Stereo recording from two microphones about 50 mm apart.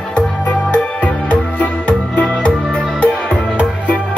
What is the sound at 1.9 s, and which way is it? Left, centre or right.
Music, left.